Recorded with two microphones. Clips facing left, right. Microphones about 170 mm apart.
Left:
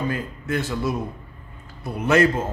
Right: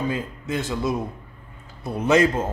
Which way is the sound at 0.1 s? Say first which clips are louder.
Left 1 dB; 15° right (ahead or behind).